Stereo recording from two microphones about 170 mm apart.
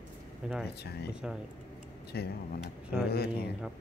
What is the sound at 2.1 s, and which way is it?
Speech, 70° left (ahead or behind).